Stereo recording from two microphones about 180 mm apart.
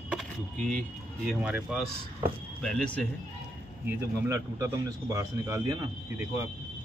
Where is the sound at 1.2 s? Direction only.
5° right (ahead or behind).